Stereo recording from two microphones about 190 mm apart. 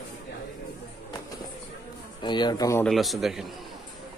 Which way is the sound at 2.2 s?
25° left (ahead or behind).